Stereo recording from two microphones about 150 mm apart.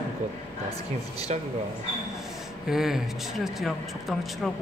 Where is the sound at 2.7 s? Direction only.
Centre (ahead or behind).